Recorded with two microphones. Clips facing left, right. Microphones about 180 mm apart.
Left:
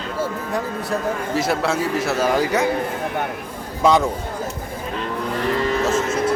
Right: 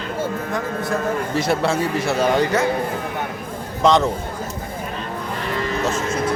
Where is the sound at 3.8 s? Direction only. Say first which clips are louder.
Even; 10° left (ahead or behind).